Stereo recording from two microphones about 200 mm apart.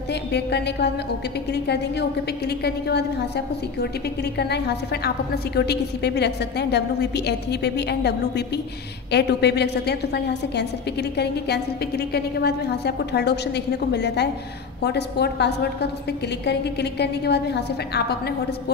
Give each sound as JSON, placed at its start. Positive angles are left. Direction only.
{"t": 0.1, "sound": "a woman's voice", "side_deg": 55}